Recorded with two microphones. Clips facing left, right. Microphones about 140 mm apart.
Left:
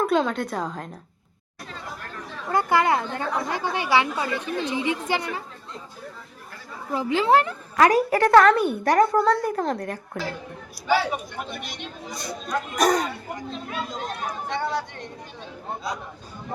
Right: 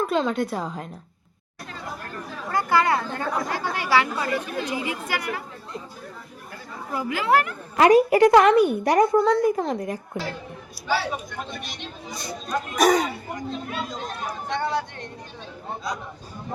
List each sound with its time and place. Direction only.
0.1 s a woman's voice: 5° right (ahead or behind)
1.7 s chatter: 5° right (ahead or behind)
2.5 s a woman's voice: 20° left (ahead or behind)
4.3 s a woman's voice: 10° right (ahead or behind)
4.7 s a woman's voice: 25° left (ahead or behind)
6.9 s a woman's voice: 25° left (ahead or behind)
7.8 s a woman's voice: 20° right (ahead or behind)
9.5 s a woman's voice: 5° right (ahead or behind)
10.8 s speech: 10° left (ahead or behind)